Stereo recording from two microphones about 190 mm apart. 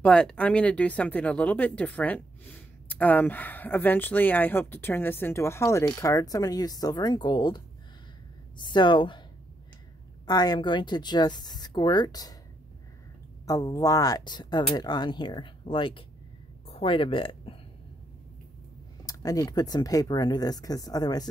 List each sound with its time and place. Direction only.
0.0 s speech: 5° left (ahead or behind); by 9.2 s 25° left (ahead or behind)
10.2 s speech: 20° left (ahead or behind)
13.5 s speech: 20° left (ahead or behind)
19.0 s speech: 20° left (ahead or behind)